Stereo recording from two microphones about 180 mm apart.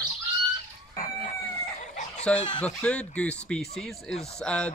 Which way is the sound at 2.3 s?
5° left (ahead or behind).